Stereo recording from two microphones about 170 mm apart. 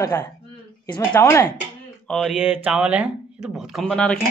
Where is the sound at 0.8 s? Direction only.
25° left (ahead or behind).